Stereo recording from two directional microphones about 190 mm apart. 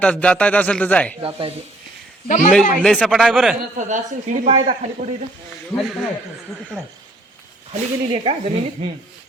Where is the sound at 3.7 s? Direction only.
40° right (ahead or behind).